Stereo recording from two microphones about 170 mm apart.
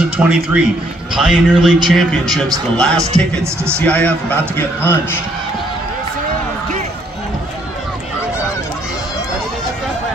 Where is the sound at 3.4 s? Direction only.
15° right (ahead or behind).